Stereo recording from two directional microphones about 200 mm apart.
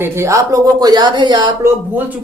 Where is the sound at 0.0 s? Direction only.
15° right (ahead or behind).